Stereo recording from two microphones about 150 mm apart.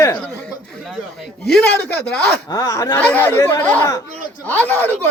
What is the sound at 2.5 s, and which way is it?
Speech, 25° left (ahead or behind).